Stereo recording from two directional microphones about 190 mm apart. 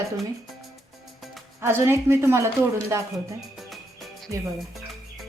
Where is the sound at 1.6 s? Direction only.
10° right (ahead or behind).